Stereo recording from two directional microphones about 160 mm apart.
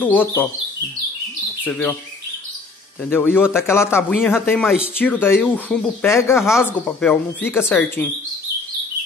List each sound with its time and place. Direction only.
0.0 s a woman's voice: 10° left (ahead or behind)
1.6 s speech: 10° left (ahead or behind)
3.1 s a woman's voice: 15° left (ahead or behind)